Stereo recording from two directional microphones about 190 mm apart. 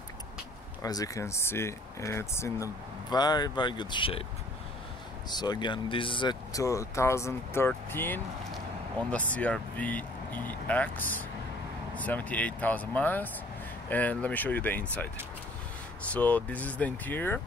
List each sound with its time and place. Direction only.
0.8 s speech: 20° left (ahead or behind)
5.3 s speech: 20° left (ahead or behind)
16.1 s speech: 10° left (ahead or behind)